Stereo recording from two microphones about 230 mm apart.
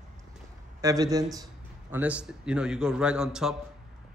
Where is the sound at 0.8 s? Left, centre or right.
Centre.